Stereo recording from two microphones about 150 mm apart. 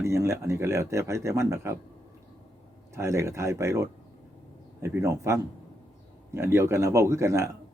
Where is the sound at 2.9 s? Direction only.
20° right (ahead or behind).